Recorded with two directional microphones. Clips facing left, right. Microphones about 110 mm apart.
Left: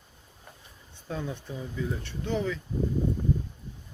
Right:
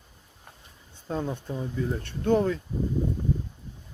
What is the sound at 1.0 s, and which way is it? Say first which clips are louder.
Speech: right 4 dB; 40° right (ahead or behind).